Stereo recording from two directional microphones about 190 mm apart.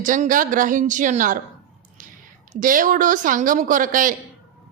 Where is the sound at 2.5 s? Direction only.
45° right (ahead or behind).